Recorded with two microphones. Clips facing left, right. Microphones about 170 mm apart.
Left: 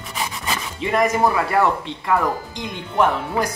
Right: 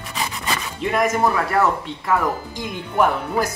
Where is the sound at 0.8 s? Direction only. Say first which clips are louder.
Left 1 dB; centre (ahead or behind).